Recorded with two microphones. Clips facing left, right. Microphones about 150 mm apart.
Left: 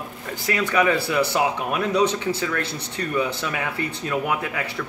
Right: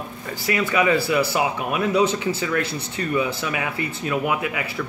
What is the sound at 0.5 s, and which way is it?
Speech, 10° right (ahead or behind).